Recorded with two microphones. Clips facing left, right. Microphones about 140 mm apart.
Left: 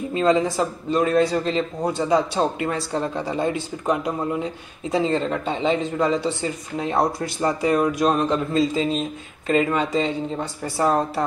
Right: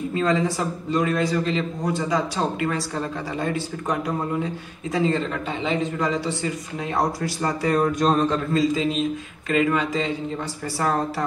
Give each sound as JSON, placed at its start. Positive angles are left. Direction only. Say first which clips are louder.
{"t": 0.1, "sound": "a man's voice", "louder": "left 4 dB", "side_deg": 25}
{"t": 5.6, "sound": "a man's voice", "louder": "left 2 dB", "side_deg": 25}
{"t": 7.7, "sound": "a sound", "louder": "right 2 dB", "side_deg": 10}
{"t": 8.5, "sound": "a man's voice", "louder": "even", "side_deg": 30}